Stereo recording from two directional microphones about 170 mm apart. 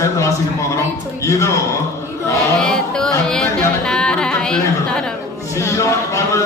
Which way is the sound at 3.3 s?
5° left (ahead or behind).